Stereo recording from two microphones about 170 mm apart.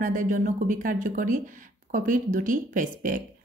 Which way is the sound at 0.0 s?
50° right (ahead or behind).